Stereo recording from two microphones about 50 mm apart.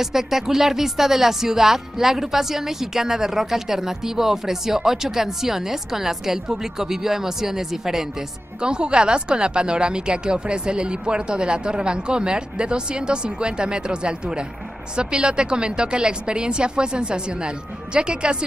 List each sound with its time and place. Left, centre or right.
0.0 s speech: centre
8.5 s speech: centre